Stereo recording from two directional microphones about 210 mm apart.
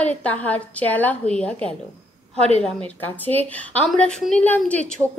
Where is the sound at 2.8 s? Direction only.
10° left (ahead or behind).